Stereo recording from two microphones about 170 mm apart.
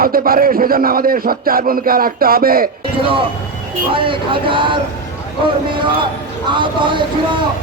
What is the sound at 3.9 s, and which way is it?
Speech, 30° right (ahead or behind).